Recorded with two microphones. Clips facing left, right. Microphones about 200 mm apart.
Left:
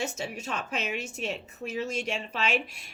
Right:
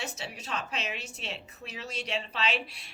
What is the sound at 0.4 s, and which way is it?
A woman's voice, 45° left (ahead or behind).